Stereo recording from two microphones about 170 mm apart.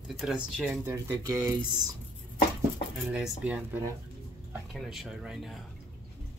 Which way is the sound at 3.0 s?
5° right (ahead or behind).